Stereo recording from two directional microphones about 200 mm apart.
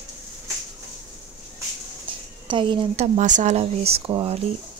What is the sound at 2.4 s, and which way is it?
Speech, 25° right (ahead or behind).